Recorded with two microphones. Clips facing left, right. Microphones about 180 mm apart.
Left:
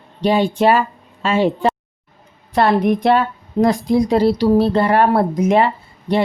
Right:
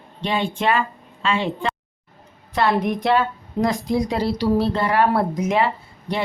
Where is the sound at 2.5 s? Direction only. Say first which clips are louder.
Left 5 dB; 55° left (ahead or behind).